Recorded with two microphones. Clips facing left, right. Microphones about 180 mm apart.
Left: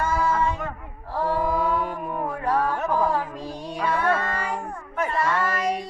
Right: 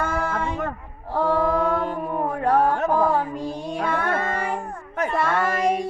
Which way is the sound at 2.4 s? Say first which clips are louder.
Right 5 dB; 55° right (ahead or behind).